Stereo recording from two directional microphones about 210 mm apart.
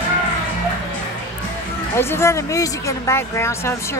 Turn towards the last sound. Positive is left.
turn(degrees=10)  # may be behind; listen again after turning